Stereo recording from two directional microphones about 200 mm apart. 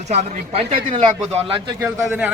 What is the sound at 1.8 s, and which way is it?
Speech, 5° right (ahead or behind).